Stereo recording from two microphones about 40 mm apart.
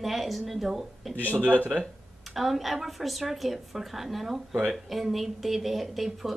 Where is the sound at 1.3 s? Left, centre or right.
Right.